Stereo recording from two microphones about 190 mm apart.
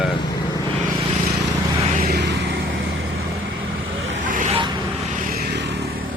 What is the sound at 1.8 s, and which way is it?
Vehicle, 45° right (ahead or behind).